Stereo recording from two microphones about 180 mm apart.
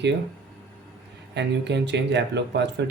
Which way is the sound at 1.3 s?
70° right (ahead or behind).